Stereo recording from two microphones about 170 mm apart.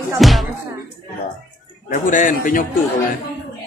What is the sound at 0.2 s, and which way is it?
Music, centre (ahead or behind).